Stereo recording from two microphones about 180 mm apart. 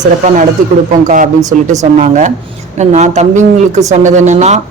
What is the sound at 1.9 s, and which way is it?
Speech, 40° right (ahead or behind).